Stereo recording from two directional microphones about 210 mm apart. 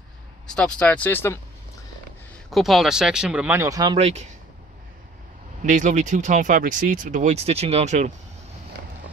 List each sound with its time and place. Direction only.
0.5 s speech: 5° left (ahead or behind)
2.5 s speech: centre (ahead or behind); by 4.3 s 30° right (ahead or behind)
5.7 s speech: 35° right (ahead or behind)